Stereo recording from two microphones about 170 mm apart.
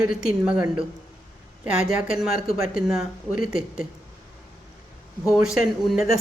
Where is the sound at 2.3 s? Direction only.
60° left (ahead or behind).